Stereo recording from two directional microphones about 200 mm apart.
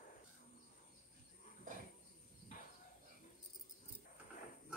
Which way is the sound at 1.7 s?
45° right (ahead or behind).